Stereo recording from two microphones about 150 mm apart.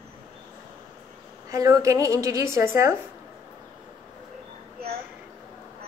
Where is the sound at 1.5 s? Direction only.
20° right (ahead or behind).